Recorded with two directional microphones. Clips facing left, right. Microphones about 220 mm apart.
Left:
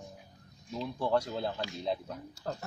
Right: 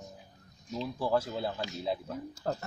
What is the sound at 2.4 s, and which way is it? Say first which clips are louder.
Speech: right 4 dB; 50° right (ahead or behind).